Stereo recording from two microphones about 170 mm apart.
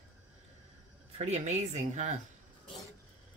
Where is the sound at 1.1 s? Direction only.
40° right (ahead or behind).